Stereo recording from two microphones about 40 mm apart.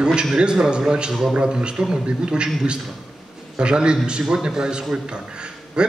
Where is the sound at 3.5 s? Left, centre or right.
Right.